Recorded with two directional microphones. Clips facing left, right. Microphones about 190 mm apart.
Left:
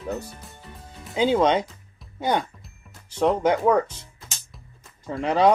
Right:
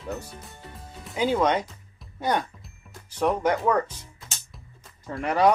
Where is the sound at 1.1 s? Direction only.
20° left (ahead or behind).